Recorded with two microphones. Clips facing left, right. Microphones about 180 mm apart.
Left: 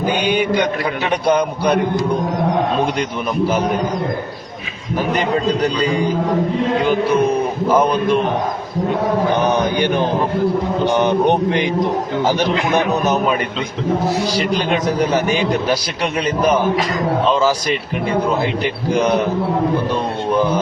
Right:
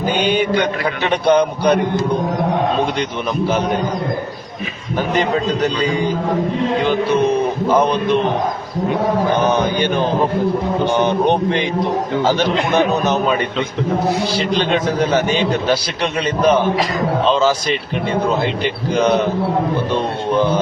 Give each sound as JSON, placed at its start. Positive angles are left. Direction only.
{"t": 0.2, "sound": "a sound", "side_deg": 10}
{"t": 1.1, "sound": "a man's voice", "side_deg": 10}
{"t": 7.1, "sound": "a man's voice", "side_deg": 10}
{"t": 9.7, "sound": "a man's voice", "side_deg": 15}
{"t": 14.3, "sound": "a man's voice", "side_deg": 10}
{"t": 16.2, "sound": "a man's voice", "side_deg": 10}